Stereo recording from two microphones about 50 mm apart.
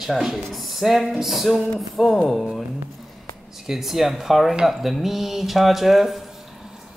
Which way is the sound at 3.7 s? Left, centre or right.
Centre.